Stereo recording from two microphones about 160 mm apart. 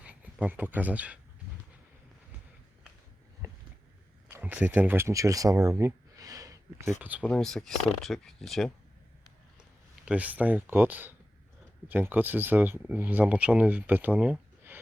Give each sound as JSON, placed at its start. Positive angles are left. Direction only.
{"t": 0.0, "sound": "speech", "side_deg": -10}
{"t": 4.3, "sound": "speech", "side_deg": -10}
{"t": 7.0, "sound": "speech", "side_deg": -10}
{"t": 7.3, "sound": "speech", "side_deg": 5}
{"t": 10.1, "sound": "speech", "side_deg": -10}